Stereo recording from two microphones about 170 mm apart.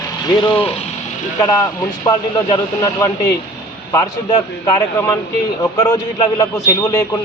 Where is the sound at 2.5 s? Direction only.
20° left (ahead or behind).